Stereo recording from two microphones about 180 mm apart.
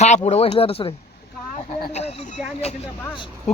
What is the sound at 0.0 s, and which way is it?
A woman's voice, 40° left (ahead or behind).